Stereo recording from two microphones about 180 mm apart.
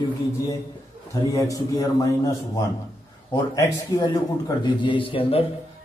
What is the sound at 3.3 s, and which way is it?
A man's voice, 25° left (ahead or behind).